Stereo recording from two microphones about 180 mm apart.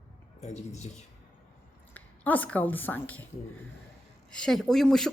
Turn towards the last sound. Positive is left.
turn(degrees=0)  # may be behind; listen again after turning